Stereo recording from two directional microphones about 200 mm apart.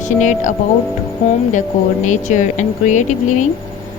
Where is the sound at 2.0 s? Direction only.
35° left (ahead or behind).